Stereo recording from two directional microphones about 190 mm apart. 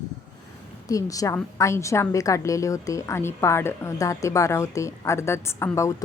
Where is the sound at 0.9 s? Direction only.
20° left (ahead or behind).